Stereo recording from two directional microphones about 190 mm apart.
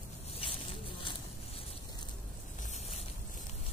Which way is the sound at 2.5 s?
40° left (ahead or behind).